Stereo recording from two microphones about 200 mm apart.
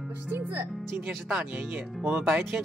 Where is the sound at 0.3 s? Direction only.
10° right (ahead or behind).